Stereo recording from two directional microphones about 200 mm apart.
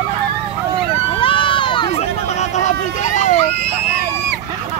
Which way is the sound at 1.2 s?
25° left (ahead or behind).